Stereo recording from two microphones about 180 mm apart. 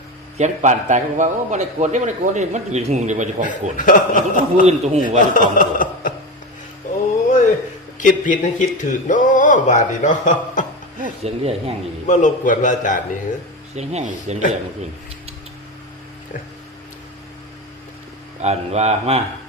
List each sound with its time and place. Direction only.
0.3 s a man's voice: 40° right (ahead or behind)
3.4 s speech: 45° left (ahead or behind)
4.6 s a man's voice: 40° right (ahead or behind)
5.3 s chuckle: 50° left (ahead or behind)
7.9 s speech: 45° left (ahead or behind)
11.0 s speech: 35° right (ahead or behind)
12.0 s speech: 45° left (ahead or behind)
13.7 s a man's voice: 40° right (ahead or behind)
18.4 s a man's voice: 35° right (ahead or behind)